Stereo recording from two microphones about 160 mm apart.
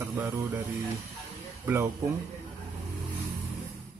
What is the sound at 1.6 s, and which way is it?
Speech, 15° right (ahead or behind).